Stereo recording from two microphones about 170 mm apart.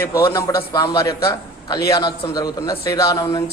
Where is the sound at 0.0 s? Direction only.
15° left (ahead or behind).